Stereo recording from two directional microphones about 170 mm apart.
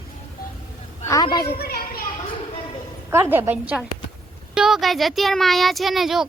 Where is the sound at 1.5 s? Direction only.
65° left (ahead or behind).